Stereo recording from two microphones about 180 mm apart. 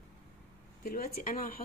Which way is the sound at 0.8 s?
55° left (ahead or behind).